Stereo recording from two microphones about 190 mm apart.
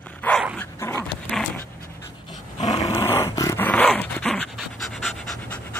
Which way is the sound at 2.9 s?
15° left (ahead or behind).